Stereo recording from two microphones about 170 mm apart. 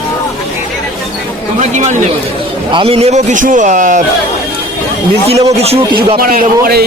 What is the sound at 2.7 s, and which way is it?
A man's voice, 35° right (ahead or behind).